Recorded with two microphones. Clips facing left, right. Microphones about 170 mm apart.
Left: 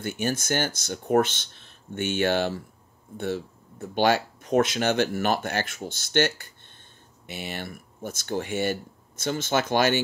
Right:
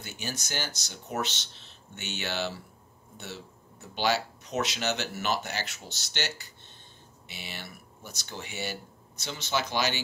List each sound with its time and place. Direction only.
0.0 s speech: 50° left (ahead or behind)